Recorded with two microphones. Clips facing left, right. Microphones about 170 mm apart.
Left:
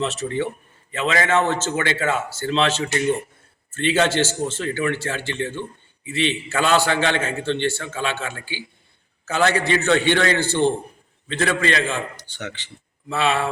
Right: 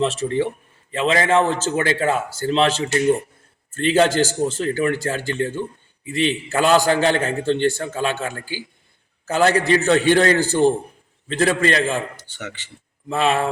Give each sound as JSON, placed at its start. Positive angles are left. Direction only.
{"t": 0.0, "sound": "a man's voice", "side_deg": -30}
{"t": 12.4, "sound": "speech", "side_deg": -5}
{"t": 13.1, "sound": "a man's voice", "side_deg": -40}